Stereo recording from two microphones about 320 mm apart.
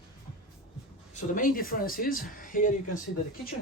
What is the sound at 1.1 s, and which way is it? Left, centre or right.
Speech, left.